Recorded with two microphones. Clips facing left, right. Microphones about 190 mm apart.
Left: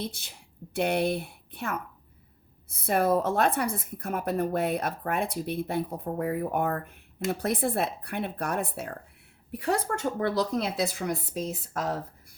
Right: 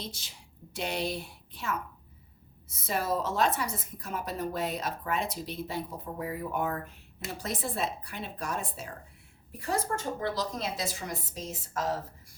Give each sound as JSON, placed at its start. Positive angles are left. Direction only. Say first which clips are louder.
{"t": 0.0, "sound": "a woman's voice", "louder": "left 6 dB", "side_deg": 60}